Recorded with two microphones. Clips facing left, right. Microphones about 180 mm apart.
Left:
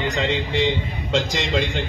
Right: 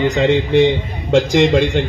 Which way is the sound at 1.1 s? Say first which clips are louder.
Right 11 dB; 50° right (ahead or behind).